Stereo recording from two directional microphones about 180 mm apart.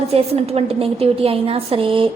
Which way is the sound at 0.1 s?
35° right (ahead or behind).